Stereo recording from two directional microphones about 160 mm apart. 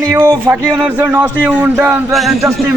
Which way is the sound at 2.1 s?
Centre (ahead or behind).